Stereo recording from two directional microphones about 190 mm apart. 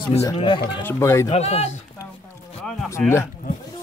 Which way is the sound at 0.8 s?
10° left (ahead or behind).